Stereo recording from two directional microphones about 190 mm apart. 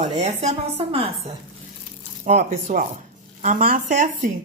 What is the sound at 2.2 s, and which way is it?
Speech, 40° right (ahead or behind).